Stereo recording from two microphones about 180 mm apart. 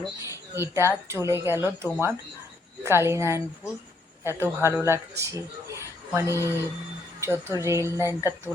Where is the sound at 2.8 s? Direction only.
15° right (ahead or behind).